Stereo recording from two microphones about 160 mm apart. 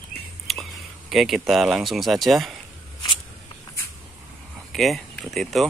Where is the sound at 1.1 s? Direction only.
Centre (ahead or behind).